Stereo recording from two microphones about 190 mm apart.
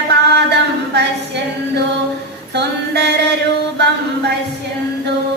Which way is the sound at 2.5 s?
65° right (ahead or behind).